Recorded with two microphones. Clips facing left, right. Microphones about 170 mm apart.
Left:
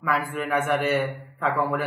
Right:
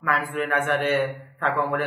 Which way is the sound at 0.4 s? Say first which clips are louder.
Right 1 dB; 5° left (ahead or behind).